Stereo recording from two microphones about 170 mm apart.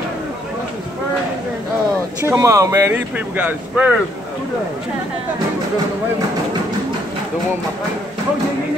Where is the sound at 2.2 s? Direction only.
15° right (ahead or behind).